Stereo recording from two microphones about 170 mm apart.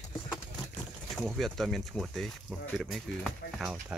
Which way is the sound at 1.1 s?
Centre (ahead or behind).